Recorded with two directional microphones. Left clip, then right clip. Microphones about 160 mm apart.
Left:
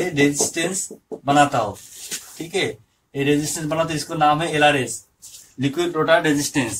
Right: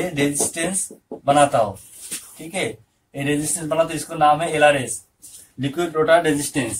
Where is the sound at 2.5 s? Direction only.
10° right (ahead or behind).